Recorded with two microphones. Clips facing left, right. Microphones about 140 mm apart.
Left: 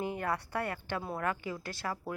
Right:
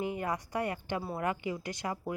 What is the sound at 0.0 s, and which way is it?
A woman's voice, 10° right (ahead or behind).